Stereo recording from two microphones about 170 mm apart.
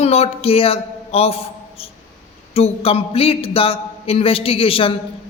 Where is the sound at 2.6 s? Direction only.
35° left (ahead or behind).